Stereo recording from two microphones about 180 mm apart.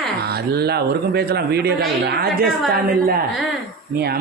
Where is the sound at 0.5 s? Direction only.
60° right (ahead or behind).